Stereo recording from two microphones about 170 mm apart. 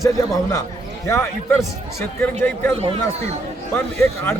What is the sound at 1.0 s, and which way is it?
Speech, 15° left (ahead or behind).